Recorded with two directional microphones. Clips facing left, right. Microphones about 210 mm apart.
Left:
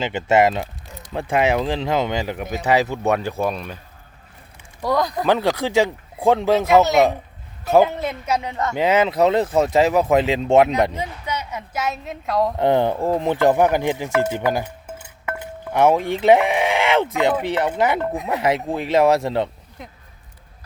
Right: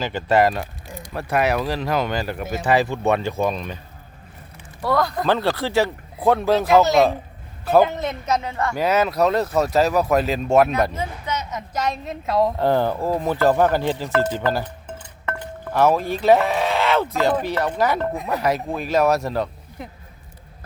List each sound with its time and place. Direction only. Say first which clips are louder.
0.0 s speech: left 1 dB; 25° left (ahead or behind); by 3.8 s 5° left (ahead or behind)
4.8 s speech: even; 15° left (ahead or behind)
6.7 s speech: even; centre (ahead or behind)
12.5 s speech: left 2 dB; 20° left (ahead or behind)
15.7 s speech: left 2 dB; 20° left (ahead or behind)
18.0 s speech: left 1 dB; centre (ahead or behind)
18.4 s speech: left 2 dB; 25° left (ahead or behind)